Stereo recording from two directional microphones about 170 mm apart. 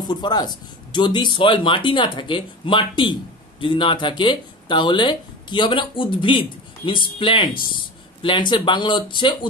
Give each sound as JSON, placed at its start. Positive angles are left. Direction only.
{"t": 0.0, "sound": "speech", "side_deg": 25}